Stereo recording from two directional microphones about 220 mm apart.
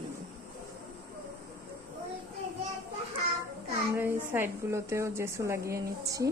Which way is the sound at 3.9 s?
10° right (ahead or behind).